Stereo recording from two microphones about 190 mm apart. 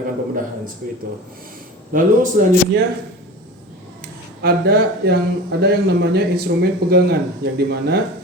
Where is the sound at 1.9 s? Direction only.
45° right (ahead or behind).